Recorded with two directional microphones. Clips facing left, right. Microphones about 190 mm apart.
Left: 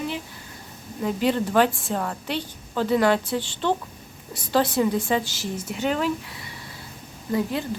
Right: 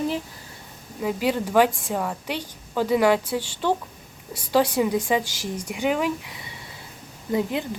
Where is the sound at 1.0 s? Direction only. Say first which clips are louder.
Left 1 dB; 5° right (ahead or behind).